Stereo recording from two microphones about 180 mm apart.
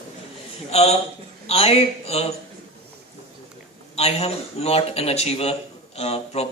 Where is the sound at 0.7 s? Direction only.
35° left (ahead or behind).